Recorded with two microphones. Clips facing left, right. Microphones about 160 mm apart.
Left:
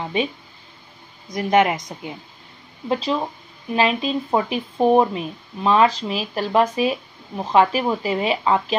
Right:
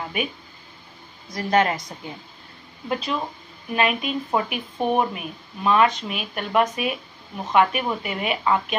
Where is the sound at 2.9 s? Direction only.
30° left (ahead or behind).